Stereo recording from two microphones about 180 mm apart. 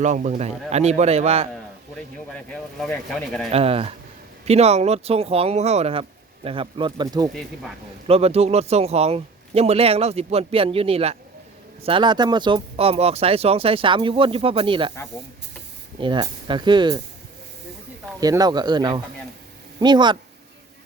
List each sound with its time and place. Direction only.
0.0 s a man's voice: 40° right (ahead or behind)
2.5 s speech: 5° left (ahead or behind)
3.5 s a man's voice: 30° right (ahead or behind)
8.0 s a man's voice: 35° right (ahead or behind)
16.0 s speech: 25° right (ahead or behind)
18.2 s speech: 20° right (ahead or behind)